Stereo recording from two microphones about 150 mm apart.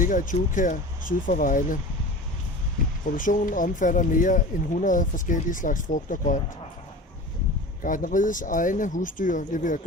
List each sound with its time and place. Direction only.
0.0 s speech: 60° left (ahead or behind)
3.2 s speech: 60° left (ahead or behind)
7.8 s speech: 60° left (ahead or behind)